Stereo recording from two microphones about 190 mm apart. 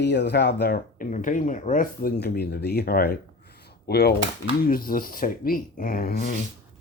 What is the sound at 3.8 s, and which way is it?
Cutlery, 55° left (ahead or behind).